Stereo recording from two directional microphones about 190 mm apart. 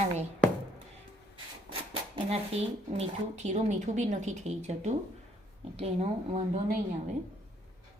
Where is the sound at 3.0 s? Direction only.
35° right (ahead or behind).